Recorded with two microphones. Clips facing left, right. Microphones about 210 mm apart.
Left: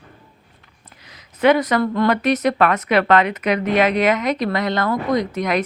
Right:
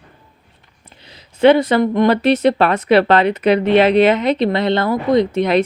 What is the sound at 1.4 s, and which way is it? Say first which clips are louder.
Speech: right 4 dB; 30° right (ahead or behind).